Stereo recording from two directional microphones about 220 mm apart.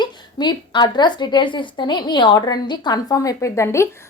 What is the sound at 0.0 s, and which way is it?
A woman's voice, 20° left (ahead or behind).